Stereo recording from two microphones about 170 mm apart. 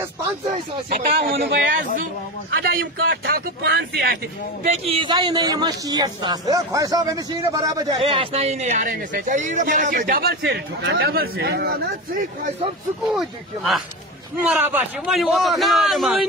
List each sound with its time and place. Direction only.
0.8 s speech: 60° right (ahead or behind)
4.9 s speech: 30° right (ahead or behind)
8.0 s speech: 35° right (ahead or behind); by 12.3 s 60° right (ahead or behind)
13.0 s a man's voice: centre (ahead or behind)